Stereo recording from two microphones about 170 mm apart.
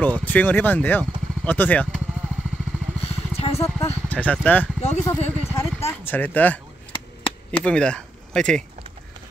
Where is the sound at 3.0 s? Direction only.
35° left (ahead or behind).